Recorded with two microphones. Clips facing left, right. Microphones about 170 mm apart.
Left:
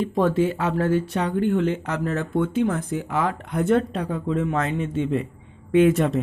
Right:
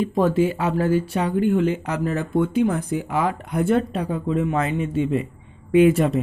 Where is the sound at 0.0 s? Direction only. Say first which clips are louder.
Right 1 dB; 10° right (ahead or behind).